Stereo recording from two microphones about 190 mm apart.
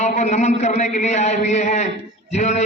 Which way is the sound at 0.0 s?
40° left (ahead or behind).